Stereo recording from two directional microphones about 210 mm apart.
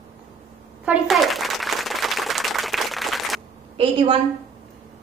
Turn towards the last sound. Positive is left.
turn(degrees=-25)  # may be behind; listen again after turning